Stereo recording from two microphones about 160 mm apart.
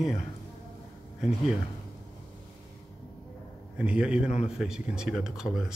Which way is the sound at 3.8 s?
5° right (ahead or behind).